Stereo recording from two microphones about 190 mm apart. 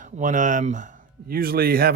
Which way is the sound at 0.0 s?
40° right (ahead or behind).